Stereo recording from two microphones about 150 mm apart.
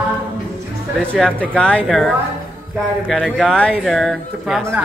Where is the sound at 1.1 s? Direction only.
5° left (ahead or behind).